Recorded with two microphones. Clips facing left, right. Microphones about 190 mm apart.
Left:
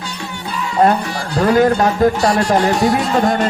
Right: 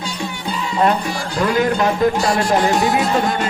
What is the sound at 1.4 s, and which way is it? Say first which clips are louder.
Speech: left 5 dB; 40° left (ahead or behind).